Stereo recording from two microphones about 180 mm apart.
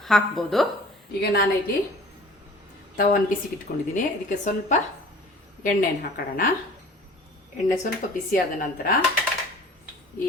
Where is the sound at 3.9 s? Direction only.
45° left (ahead or behind).